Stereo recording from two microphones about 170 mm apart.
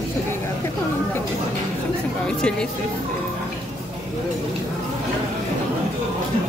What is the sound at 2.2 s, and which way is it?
Speech, 5° left (ahead or behind).